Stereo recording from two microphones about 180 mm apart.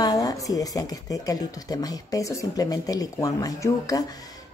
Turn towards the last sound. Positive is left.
turn(degrees=20)  # may be behind; listen again after turning